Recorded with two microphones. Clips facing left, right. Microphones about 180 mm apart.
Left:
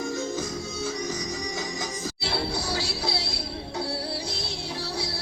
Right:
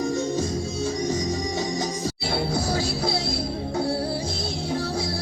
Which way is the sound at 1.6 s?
40° right (ahead or behind).